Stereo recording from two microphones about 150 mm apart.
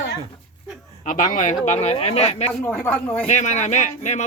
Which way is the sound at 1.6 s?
50° left (ahead or behind).